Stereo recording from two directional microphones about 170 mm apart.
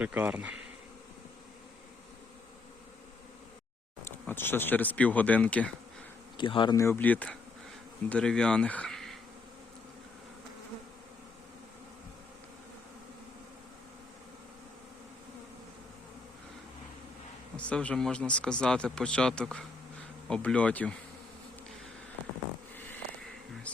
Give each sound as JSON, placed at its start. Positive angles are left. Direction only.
{"t": 0.0, "sound": "bee", "side_deg": -10}
{"t": 4.0, "sound": "speech", "side_deg": 15}
{"t": 6.3, "sound": "speech", "side_deg": 30}
{"t": 6.7, "sound": "speech", "side_deg": 15}
{"t": 17.6, "sound": "speech", "side_deg": 5}
{"t": 22.7, "sound": "a sound", "side_deg": 10}